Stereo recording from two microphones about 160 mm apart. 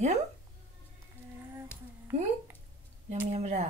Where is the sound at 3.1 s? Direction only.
45° right (ahead or behind).